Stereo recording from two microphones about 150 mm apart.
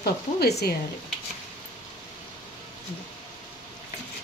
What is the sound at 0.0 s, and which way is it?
Speech, 90° left.